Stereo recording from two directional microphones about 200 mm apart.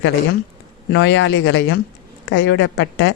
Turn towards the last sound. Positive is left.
turn(degrees=70)  # may be behind; listen again after turning